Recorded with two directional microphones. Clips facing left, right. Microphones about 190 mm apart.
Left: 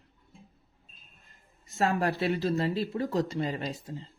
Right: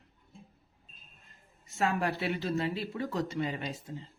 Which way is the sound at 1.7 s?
40° left (ahead or behind).